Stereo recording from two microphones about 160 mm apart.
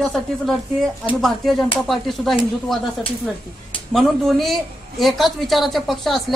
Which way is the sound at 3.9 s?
Centre (ahead or behind).